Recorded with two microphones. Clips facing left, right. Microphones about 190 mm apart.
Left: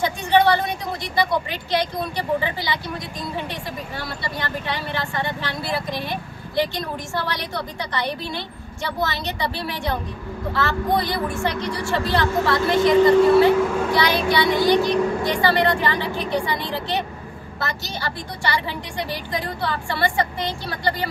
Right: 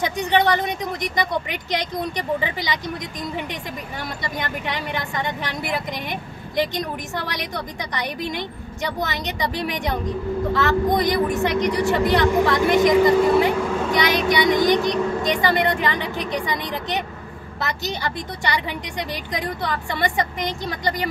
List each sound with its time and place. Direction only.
0.0 s speech: 15° right (ahead or behind)
4.2 s speech: 15° right (ahead or behind)